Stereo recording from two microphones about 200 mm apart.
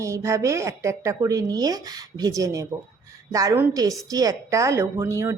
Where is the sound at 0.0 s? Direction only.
15° right (ahead or behind).